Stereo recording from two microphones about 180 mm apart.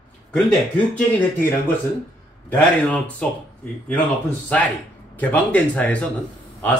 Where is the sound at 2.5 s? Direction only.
5° left (ahead or behind).